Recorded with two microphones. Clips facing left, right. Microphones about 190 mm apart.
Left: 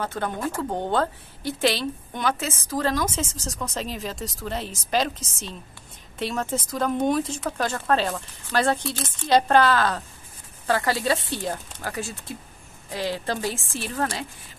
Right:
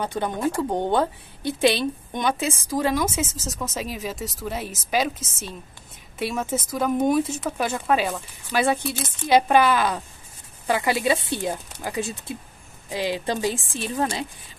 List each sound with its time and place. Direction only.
0.0 s a woman's voice: 15° right (ahead or behind)